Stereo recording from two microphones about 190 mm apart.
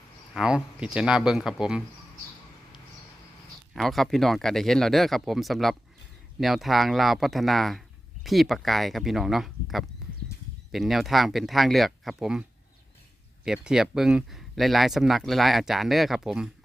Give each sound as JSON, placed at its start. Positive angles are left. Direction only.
{"t": 0.3, "sound": "speech", "side_deg": -5}
{"t": 3.8, "sound": "speech", "side_deg": 0}